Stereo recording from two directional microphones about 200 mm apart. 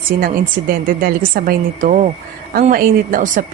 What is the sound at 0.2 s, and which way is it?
A woman's voice, 45° right (ahead or behind).